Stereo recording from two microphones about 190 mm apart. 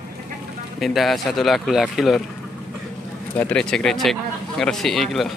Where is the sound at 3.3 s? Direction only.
5° left (ahead or behind).